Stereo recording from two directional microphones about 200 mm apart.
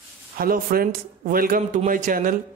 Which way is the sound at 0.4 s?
45° right (ahead or behind).